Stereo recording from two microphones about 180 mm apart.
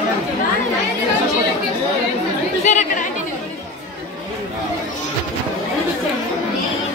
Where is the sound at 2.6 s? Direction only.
40° left (ahead or behind).